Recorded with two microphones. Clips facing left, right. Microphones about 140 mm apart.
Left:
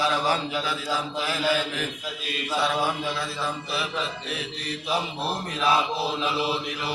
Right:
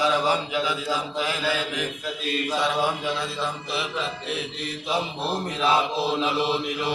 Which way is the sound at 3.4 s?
25° right (ahead or behind).